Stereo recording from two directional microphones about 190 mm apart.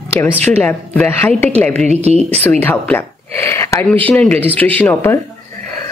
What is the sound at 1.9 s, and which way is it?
Speech, 35° right (ahead or behind).